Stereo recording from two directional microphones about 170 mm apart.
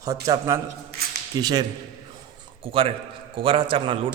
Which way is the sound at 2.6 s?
30° right (ahead or behind).